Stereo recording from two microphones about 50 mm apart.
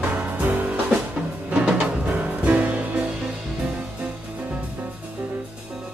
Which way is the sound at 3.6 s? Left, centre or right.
Centre.